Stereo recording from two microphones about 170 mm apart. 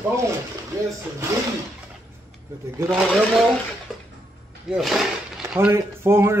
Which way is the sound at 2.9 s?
Centre (ahead or behind).